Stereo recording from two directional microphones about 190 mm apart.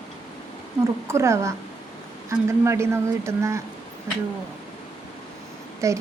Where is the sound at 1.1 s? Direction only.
15° right (ahead or behind).